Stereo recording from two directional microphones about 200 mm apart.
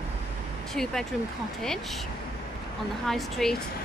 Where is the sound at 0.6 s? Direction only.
Centre (ahead or behind).